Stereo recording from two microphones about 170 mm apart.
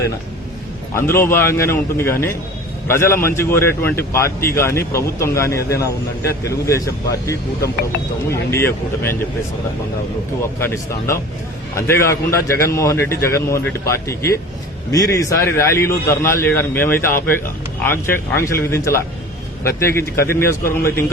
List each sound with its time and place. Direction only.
0.9 s a man's voice: 15° left (ahead or behind)
10.6 s a man's voice: 15° left (ahead or behind)